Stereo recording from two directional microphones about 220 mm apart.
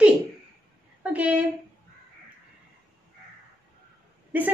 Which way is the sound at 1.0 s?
5° right (ahead or behind).